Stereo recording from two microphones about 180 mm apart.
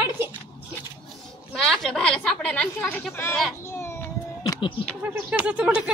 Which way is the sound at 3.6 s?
15° left (ahead or behind).